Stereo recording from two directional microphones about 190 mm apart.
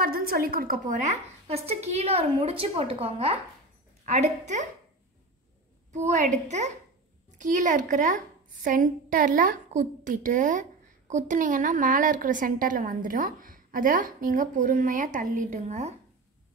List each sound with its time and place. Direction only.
0.0 s a woman's voice: 50° right (ahead or behind)
6.4 s a woman's voice: 35° right (ahead or behind)